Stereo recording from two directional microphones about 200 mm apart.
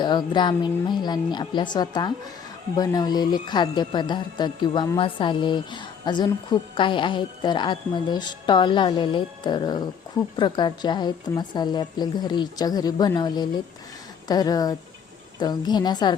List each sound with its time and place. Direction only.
0.0 s speech: 20° left (ahead or behind)